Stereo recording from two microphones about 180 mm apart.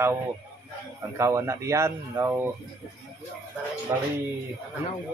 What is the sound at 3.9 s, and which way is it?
Speech, 20° right (ahead or behind).